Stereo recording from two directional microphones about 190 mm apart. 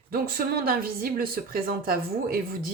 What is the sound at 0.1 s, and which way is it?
Speech, 50° right (ahead or behind).